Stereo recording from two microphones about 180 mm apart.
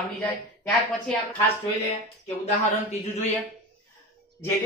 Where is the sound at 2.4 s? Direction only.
40° left (ahead or behind).